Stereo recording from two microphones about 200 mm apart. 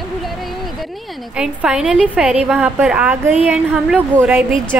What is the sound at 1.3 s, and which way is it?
A woman's voice, 5° right (ahead or behind).